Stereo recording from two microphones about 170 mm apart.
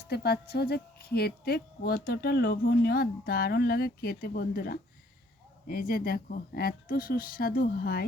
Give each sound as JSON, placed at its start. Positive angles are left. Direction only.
{"t": 0.0, "sound": "a woman's voice", "side_deg": 70}